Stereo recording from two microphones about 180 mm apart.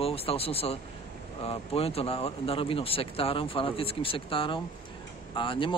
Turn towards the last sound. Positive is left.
turn(degrees=30)  # may be behind; listen again after turning